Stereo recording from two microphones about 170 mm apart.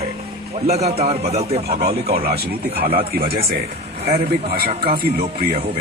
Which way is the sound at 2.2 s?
65° right (ahead or behind).